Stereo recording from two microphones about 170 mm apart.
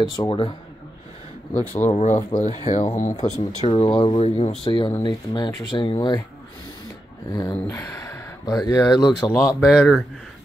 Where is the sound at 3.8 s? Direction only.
25° left (ahead or behind).